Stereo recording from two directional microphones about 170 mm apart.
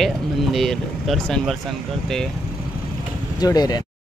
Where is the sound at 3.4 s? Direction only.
25° left (ahead or behind).